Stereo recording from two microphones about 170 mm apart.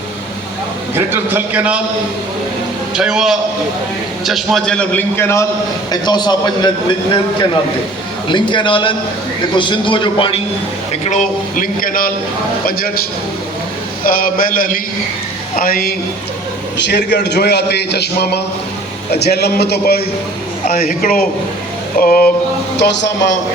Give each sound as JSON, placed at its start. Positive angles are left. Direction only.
{"t": 0.9, "sound": "a man's voice", "side_deg": -10}
{"t": 2.9, "sound": "a man's voice", "side_deg": -5}
{"t": 8.3, "sound": "a man's voice", "side_deg": 30}
{"t": 11.0, "sound": "speech", "side_deg": 45}
{"t": 14.0, "sound": "speech", "side_deg": 55}
{"t": 16.7, "sound": "a man's voice", "side_deg": 90}
{"t": 22.8, "sound": "speech", "side_deg": 90}